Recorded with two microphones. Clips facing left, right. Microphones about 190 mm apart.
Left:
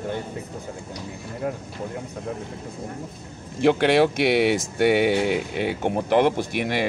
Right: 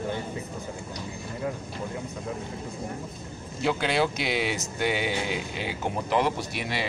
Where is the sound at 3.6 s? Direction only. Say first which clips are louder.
Left 8 dB; 65° left (ahead or behind).